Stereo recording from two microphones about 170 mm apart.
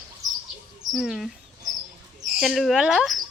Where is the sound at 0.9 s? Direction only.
Centre (ahead or behind).